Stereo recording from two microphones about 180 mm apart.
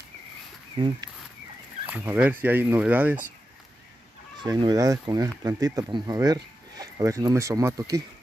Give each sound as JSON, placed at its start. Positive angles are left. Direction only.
{"t": 0.7, "sound": "speech", "side_deg": -25}
{"t": 1.9, "sound": "speech", "side_deg": -10}
{"t": 4.4, "sound": "speech", "side_deg": -25}